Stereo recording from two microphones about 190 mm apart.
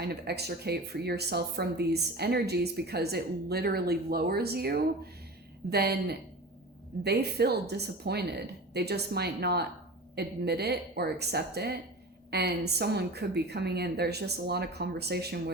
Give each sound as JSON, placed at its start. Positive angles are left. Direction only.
{"t": 0.0, "sound": "speech", "side_deg": -60}